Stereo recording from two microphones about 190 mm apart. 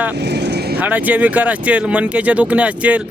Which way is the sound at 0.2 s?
60° right (ahead or behind).